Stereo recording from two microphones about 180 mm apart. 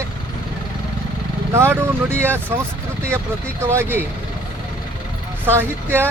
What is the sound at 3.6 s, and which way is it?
Speech, 15° right (ahead or behind).